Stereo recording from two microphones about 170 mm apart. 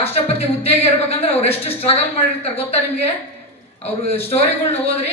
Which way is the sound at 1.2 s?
35° left (ahead or behind).